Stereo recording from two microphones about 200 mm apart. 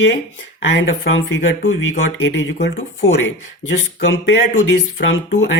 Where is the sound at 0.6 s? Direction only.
65° left (ahead or behind).